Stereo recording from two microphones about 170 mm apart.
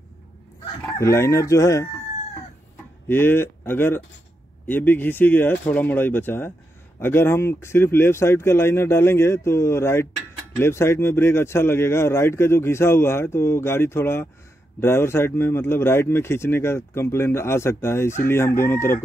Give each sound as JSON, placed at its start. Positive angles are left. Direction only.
{"t": 0.9, "sound": "speech", "side_deg": 15}
{"t": 3.1, "sound": "speech", "side_deg": 15}